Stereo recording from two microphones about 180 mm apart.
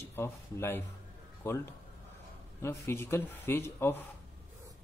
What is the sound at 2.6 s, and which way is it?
Speech, 15° left (ahead or behind).